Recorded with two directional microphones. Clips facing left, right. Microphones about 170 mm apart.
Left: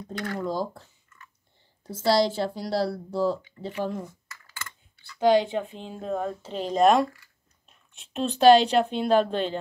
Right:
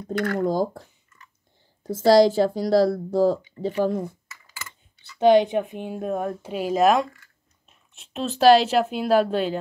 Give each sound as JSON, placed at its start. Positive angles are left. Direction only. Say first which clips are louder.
{"t": 0.1, "sound": "speech", "louder": "right 7 dB", "side_deg": -60}
{"t": 4.5, "sound": "a sound", "louder": "even", "side_deg": -15}
{"t": 5.2, "sound": "speech", "louder": "right 4 dB", "side_deg": -20}